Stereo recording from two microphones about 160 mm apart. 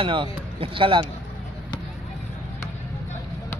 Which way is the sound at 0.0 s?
30° right (ahead or behind).